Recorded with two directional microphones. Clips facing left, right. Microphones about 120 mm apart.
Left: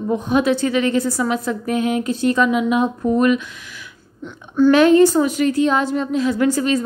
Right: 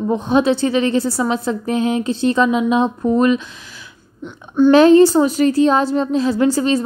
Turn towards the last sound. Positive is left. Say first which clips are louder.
# right 2 dB
turn(degrees=-30)  # may be behind; listen again after turning